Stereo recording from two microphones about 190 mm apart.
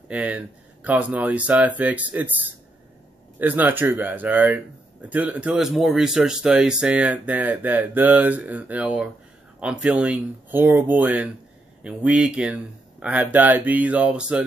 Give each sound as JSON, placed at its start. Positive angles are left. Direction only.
{"t": 0.1, "sound": "speech", "side_deg": -5}